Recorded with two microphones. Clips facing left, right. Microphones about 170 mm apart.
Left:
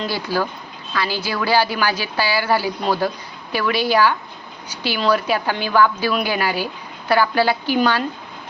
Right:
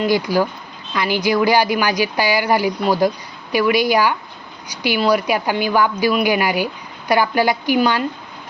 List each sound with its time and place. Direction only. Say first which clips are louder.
0.0 s speech: right 6 dB; 15° right (ahead or behind)